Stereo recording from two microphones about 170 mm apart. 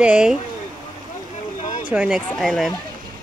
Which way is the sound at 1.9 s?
5° right (ahead or behind).